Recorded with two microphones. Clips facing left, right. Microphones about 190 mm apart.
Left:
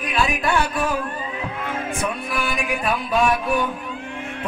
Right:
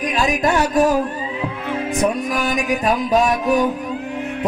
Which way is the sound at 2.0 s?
40° right (ahead or behind).